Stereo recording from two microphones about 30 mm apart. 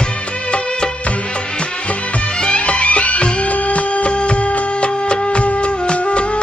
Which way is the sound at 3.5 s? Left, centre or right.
Left.